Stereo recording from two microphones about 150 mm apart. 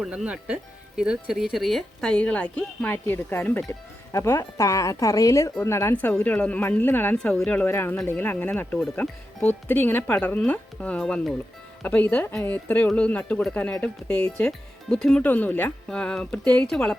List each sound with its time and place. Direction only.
0.0 s speech: 5° right (ahead or behind)